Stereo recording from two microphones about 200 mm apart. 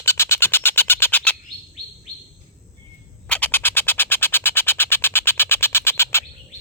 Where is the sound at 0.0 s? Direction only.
15° left (ahead or behind).